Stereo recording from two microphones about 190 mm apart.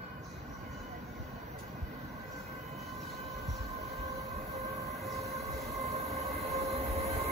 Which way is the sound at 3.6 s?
35° right (ahead or behind).